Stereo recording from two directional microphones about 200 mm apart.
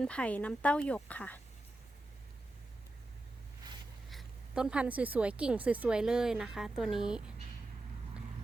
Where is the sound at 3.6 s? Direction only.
20° right (ahead or behind).